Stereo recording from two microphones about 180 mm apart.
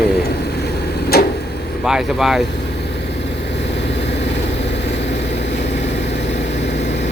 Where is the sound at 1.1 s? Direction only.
60° left (ahead or behind).